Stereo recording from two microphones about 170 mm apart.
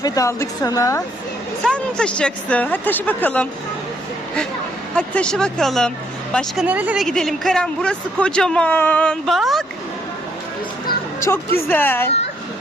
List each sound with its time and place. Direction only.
0.0 s a woman's voice: 20° left (ahead or behind)
1.6 s speech: 5° left (ahead or behind)
4.9 s speech: 5° left (ahead or behind)
6.7 s speech: 10° right (ahead or behind)
11.7 s speech: 10° left (ahead or behind)